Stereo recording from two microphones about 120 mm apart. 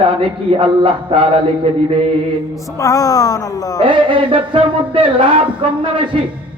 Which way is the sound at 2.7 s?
30° left (ahead or behind).